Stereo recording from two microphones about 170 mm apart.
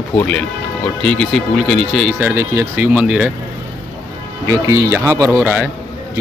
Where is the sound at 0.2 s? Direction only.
10° left (ahead or behind); by 3.3 s 5° right (ahead or behind).